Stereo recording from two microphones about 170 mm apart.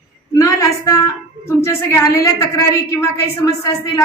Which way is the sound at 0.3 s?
20° left (ahead or behind).